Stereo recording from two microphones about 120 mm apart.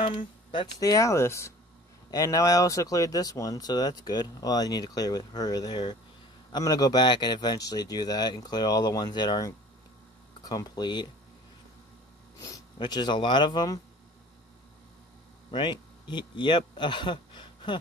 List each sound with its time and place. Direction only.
0.7 s speech: 30° left (ahead or behind)
12.4 s speech: 35° left (ahead or behind)
15.5 s speech: 40° left (ahead or behind)